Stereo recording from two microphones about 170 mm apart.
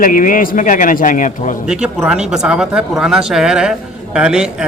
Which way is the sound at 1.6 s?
5° right (ahead or behind).